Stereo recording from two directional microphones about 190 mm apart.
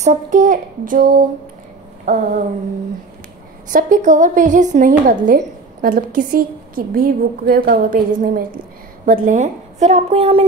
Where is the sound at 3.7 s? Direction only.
40° right (ahead or behind).